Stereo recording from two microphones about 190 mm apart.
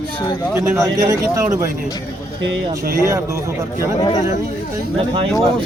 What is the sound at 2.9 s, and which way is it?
Speech, 15° right (ahead or behind).